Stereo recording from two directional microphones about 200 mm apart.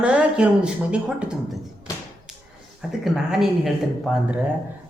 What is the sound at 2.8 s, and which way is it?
Speech, centre (ahead or behind).